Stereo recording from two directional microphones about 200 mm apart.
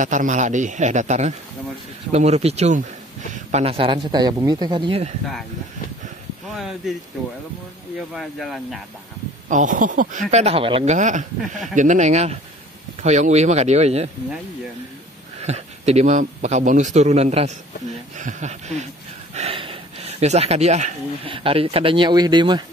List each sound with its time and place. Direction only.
0.0 s a man's voice: 40° right (ahead or behind)
8.1 s speech: centre (ahead or behind)
9.5 s a man's voice: 40° right (ahead or behind)
10.3 s a man's voice: 30° right (ahead or behind)
15.4 s a man's voice: 30° right (ahead or behind)